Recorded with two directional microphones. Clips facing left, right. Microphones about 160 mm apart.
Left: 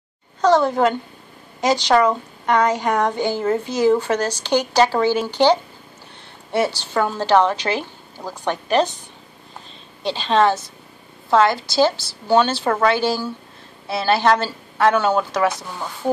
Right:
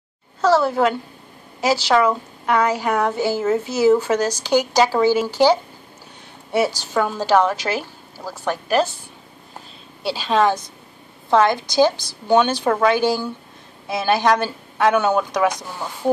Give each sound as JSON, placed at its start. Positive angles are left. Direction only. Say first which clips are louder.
{"t": 0.4, "sound": "a sound", "louder": "left 1 dB", "side_deg": -5}
{"t": 1.6, "sound": "a woman's voice", "louder": "left 1 dB", "side_deg": -5}
{"t": 10.0, "sound": "speech", "louder": "left 1 dB", "side_deg": -10}